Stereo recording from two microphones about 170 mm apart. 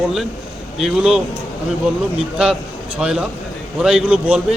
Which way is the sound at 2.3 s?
5° right (ahead or behind).